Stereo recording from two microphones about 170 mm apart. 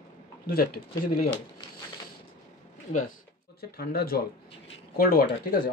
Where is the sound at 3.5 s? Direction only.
65° left (ahead or behind).